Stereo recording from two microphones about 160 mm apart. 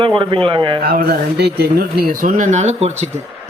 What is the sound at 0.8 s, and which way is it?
A man's voice, 75° right (ahead or behind).